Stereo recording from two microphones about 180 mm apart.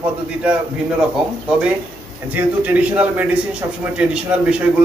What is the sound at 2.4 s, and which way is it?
A man's voice, 10° right (ahead or behind).